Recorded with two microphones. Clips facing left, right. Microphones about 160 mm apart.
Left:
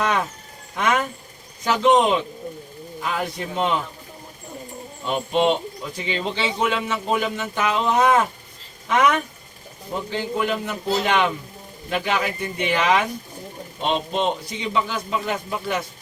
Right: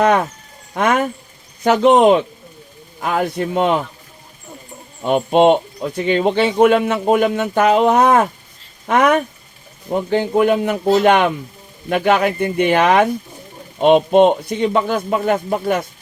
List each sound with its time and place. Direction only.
0.0 s speech: 55° right (ahead or behind)
5.0 s speech: 55° right (ahead or behind)